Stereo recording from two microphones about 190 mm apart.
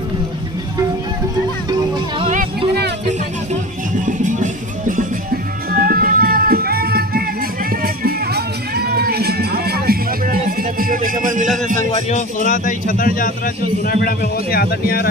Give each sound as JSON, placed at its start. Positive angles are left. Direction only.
{"t": 1.7, "sound": "music", "side_deg": -25}
{"t": 4.0, "sound": "music", "side_deg": -40}
{"t": 11.6, "sound": "a man's voice", "side_deg": -45}
{"t": 11.9, "sound": "a man's voice", "side_deg": 35}